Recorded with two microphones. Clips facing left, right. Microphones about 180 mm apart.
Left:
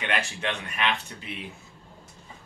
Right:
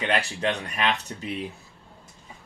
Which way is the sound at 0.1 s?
35° right (ahead or behind).